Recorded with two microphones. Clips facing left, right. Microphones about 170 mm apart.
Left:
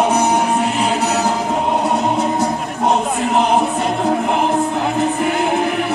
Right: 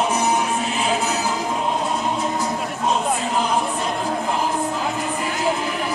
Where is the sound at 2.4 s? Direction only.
65° left (ahead or behind).